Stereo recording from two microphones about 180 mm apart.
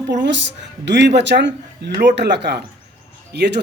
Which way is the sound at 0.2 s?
80° right.